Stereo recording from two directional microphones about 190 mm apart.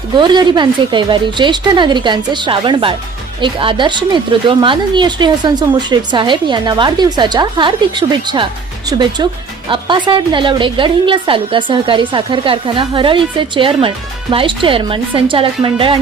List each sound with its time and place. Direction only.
0.2 s a woman's voice: 25° right (ahead or behind)